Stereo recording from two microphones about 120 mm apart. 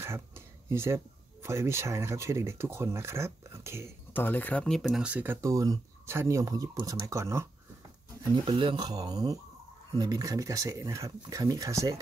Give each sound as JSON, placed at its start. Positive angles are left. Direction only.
{"t": 0.7, "sound": "speech", "side_deg": -25}
{"t": 4.1, "sound": "speech", "side_deg": 15}
{"t": 5.0, "sound": "speech", "side_deg": -15}
{"t": 8.5, "sound": "speech", "side_deg": -45}